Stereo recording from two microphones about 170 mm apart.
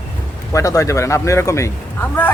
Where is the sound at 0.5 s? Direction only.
20° left (ahead or behind).